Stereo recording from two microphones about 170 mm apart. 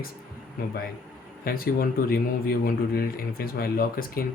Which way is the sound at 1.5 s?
60° left (ahead or behind).